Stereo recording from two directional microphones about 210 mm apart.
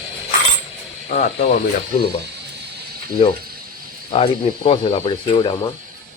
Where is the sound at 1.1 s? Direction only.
35° left (ahead or behind).